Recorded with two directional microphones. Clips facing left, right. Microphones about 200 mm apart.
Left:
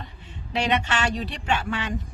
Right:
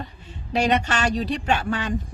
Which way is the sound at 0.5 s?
40° right (ahead or behind).